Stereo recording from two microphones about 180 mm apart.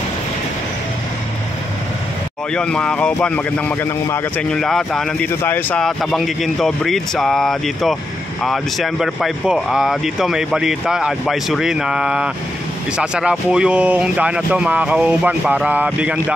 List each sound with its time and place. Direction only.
2.5 s speech: 5° left (ahead or behind)